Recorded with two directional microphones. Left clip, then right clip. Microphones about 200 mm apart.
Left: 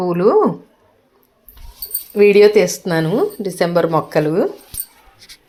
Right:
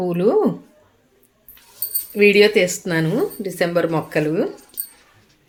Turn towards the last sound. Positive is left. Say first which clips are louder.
# left 5 dB
turn(degrees=15)  # may be behind; listen again after turning